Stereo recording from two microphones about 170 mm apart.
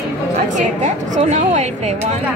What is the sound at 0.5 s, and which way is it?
A woman's voice, 45° right (ahead or behind).